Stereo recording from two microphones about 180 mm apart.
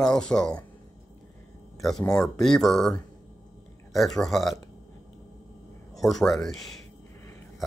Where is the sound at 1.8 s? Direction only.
Centre (ahead or behind).